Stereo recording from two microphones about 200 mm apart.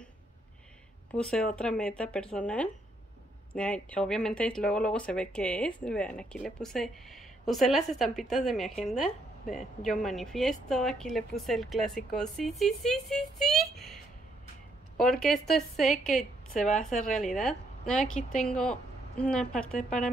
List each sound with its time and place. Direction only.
1.1 s speech: 5° left (ahead or behind)
16.6 s speech: 35° left (ahead or behind)
17.2 s a woman's voice: centre (ahead or behind)